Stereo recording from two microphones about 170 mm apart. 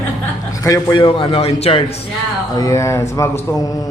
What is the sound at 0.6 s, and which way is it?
Speech, 20° left (ahead or behind).